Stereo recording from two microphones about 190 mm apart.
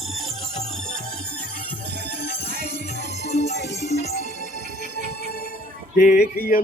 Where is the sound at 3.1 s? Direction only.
35° left (ahead or behind).